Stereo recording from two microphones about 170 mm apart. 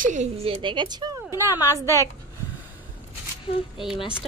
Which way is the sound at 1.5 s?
20° left (ahead or behind).